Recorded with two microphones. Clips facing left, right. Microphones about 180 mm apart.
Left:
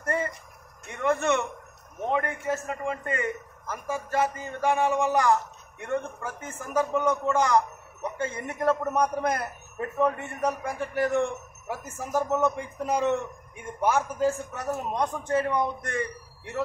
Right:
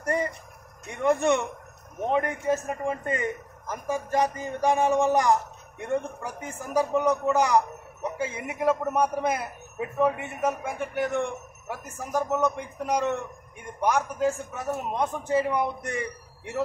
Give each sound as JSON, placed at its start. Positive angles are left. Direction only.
{"t": 0.0, "sound": "a man's voice", "side_deg": -15}